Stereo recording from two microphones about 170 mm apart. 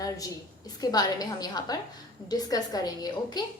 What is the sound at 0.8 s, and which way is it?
A woman's voice, 25° left (ahead or behind).